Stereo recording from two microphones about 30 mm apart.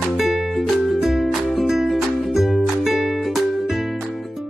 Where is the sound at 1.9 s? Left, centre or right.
Centre.